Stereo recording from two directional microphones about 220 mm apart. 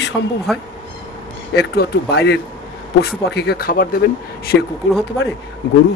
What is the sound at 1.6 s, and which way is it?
Speech, 45° left (ahead or behind).